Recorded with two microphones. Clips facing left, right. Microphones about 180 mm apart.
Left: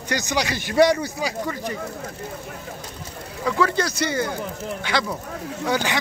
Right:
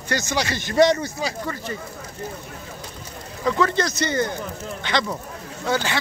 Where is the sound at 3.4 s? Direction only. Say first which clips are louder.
Right 1 dB; 10° left (ahead or behind).